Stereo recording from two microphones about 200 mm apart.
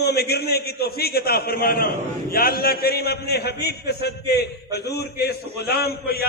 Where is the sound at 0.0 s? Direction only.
55° left (ahead or behind).